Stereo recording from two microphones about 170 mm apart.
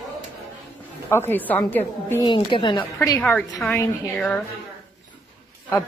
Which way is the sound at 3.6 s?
10° left (ahead or behind).